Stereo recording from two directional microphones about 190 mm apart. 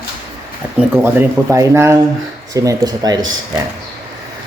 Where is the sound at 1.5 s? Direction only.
15° right (ahead or behind).